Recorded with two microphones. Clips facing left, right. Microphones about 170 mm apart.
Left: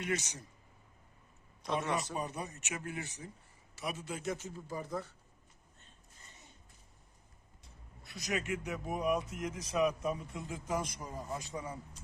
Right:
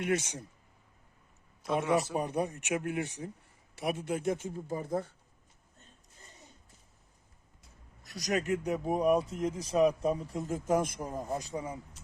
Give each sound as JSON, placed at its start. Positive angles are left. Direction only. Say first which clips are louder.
{"t": 0.0, "sound": "a man's voice", "louder": "right 6 dB", "side_deg": -55}
{"t": 1.6, "sound": "a man's voice", "louder": "right 4 dB", "side_deg": -5}
{"t": 2.1, "sound": "a man's voice", "louder": "right 8 dB", "side_deg": -60}
{"t": 8.0, "sound": "a man's voice", "louder": "right 6 dB", "side_deg": -40}